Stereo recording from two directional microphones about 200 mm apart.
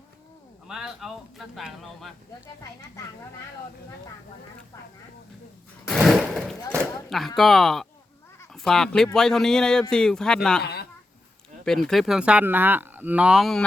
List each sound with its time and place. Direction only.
0.7 s speech: 5° right (ahead or behind)
6.0 s a sound: centre (ahead or behind)
7.1 s speech: centre (ahead or behind)
10.6 s speech: 55° left (ahead or behind)
11.6 s speech: centre (ahead or behind)